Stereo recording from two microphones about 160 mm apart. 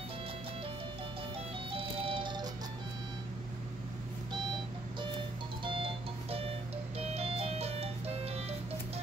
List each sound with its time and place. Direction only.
1.7 s music: 35° right (ahead or behind)
5.6 s music: 30° right (ahead or behind)
7.0 s music: 40° right (ahead or behind)